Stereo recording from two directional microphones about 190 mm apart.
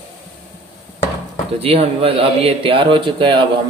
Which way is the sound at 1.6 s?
30° right (ahead or behind).